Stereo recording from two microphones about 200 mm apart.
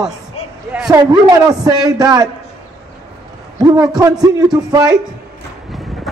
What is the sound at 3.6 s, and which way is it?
A man's voice, 20° right (ahead or behind).